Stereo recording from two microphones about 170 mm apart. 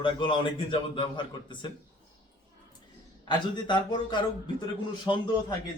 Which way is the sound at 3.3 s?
25° left (ahead or behind).